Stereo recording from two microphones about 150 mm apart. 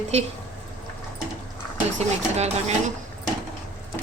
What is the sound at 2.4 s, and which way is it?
Speech, 50° right (ahead or behind).